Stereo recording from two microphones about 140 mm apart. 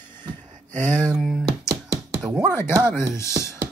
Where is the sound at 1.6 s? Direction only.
25° right (ahead or behind).